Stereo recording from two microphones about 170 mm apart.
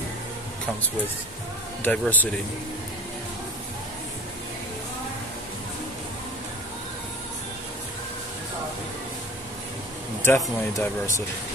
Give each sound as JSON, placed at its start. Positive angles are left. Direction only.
{"t": 1.8, "sound": "speech", "side_deg": 10}
{"t": 10.2, "sound": "speech", "side_deg": 15}